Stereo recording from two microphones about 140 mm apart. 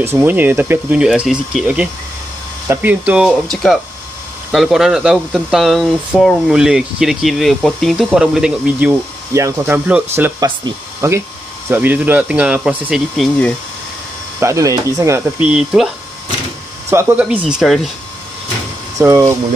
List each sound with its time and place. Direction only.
0.0 s speech: 20° right (ahead or behind)
9.3 s speech: 20° right (ahead or behind); by 13.6 s 5° left (ahead or behind)
14.4 s speech: 20° right (ahead or behind)
15.4 s speech: 5° right (ahead or behind)
16.9 s speech: 20° right (ahead or behind)
17.2 s speech: 5° right (ahead or behind)
18.9 s speech: 20° right (ahead or behind)